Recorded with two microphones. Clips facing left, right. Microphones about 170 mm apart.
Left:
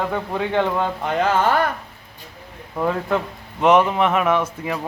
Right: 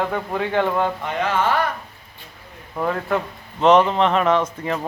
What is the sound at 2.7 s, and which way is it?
A man's voice, centre (ahead or behind).